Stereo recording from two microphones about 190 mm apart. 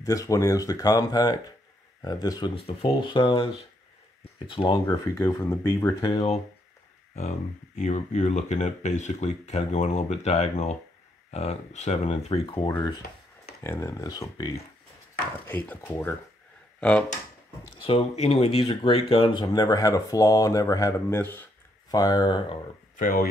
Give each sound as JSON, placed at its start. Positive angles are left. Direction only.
{"t": 0.0, "sound": "speech", "side_deg": 20}
{"t": 7.2, "sound": "speech", "side_deg": 35}
{"t": 12.6, "sound": "speech", "side_deg": 20}
{"t": 17.8, "sound": "speech", "side_deg": 30}
{"t": 22.9, "sound": "speech", "side_deg": 45}